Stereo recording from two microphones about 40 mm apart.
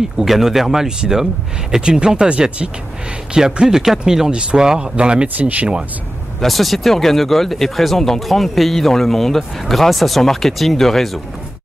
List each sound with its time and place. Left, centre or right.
0.2 s speech: centre
1.9 s speech: centre
3.3 s speech: centre
4.3 s speech: right
5.4 s speech: right
6.4 s speech: centre